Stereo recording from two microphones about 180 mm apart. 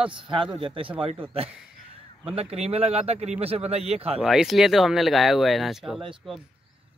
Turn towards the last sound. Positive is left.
turn(degrees=0)  # may be behind; listen again after turning